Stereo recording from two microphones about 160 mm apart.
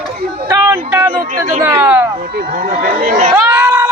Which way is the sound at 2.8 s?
55° right (ahead or behind).